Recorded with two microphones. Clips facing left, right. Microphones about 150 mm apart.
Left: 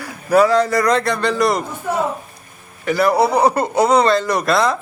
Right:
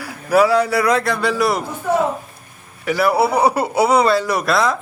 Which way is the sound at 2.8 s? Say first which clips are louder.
Left 1 dB; 5° right (ahead or behind).